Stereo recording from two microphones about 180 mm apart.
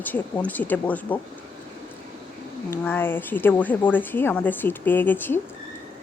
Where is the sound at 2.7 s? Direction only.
10° left (ahead or behind).